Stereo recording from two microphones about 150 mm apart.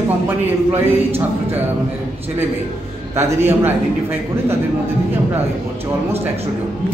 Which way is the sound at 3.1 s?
15° right (ahead or behind).